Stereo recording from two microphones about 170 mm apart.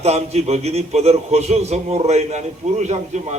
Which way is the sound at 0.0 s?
40° right (ahead or behind).